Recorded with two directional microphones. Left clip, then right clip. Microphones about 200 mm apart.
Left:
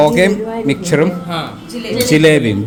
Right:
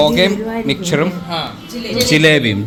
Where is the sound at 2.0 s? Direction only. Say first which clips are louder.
Left 1 dB; 15° left (ahead or behind).